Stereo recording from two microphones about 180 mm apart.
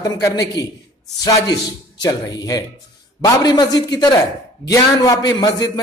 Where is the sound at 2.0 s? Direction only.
20° left (ahead or behind).